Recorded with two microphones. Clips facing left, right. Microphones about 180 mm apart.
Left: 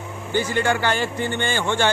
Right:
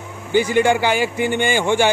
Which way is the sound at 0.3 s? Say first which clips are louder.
Right 6 dB; 15° right (ahead or behind).